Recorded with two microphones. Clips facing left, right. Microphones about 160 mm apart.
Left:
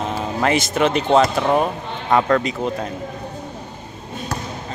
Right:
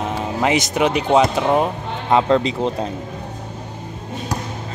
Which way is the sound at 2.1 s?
25° right (ahead or behind).